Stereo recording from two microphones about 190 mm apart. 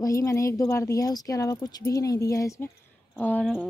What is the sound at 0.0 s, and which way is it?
Speech, 15° left (ahead or behind).